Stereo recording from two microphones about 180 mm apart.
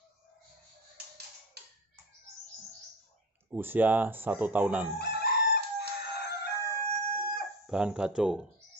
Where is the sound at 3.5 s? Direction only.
10° right (ahead or behind).